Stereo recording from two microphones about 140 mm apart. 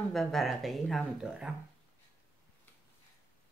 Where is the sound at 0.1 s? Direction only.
Centre (ahead or behind).